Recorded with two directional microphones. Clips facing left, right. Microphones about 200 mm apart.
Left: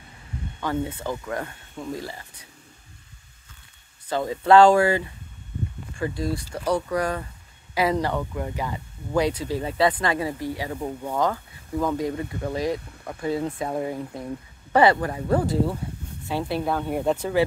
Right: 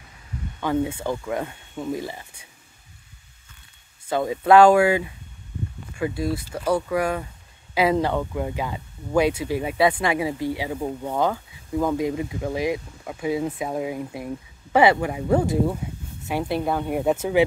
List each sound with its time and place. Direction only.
0.6 s speech: 15° right (ahead or behind)
4.1 s speech: 10° right (ahead or behind)